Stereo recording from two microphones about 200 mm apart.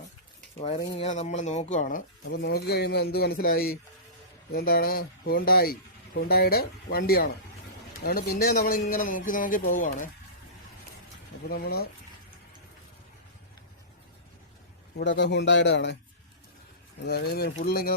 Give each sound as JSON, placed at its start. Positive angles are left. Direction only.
{"t": 0.9, "sound": "speech", "side_deg": 35}
{"t": 2.3, "sound": "a man's voice", "side_deg": 55}
{"t": 11.4, "sound": "a man's voice", "side_deg": 50}
{"t": 14.9, "sound": "a man's voice", "side_deg": 60}
{"t": 17.1, "sound": "a man's voice", "side_deg": 55}